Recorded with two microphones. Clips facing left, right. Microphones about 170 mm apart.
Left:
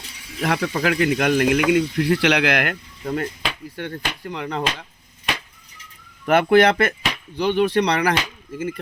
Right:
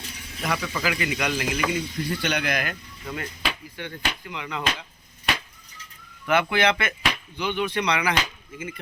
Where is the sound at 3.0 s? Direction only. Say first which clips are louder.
Left 6 dB; 45° left (ahead or behind).